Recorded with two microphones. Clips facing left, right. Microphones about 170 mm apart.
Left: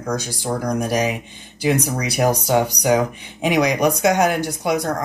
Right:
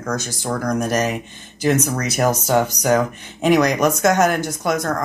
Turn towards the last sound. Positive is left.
turn(degrees=15)  # may be behind; listen again after turning